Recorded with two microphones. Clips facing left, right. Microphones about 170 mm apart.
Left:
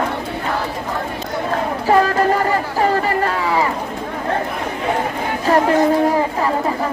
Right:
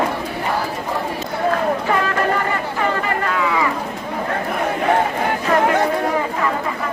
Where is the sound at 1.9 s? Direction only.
35° left (ahead or behind).